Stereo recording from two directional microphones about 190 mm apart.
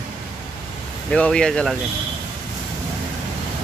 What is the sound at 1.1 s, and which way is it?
Speech, 5° left (ahead or behind).